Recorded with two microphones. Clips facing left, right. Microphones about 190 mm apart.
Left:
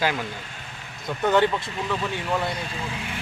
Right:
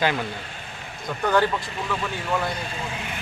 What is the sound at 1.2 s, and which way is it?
Speech, 25° left (ahead or behind).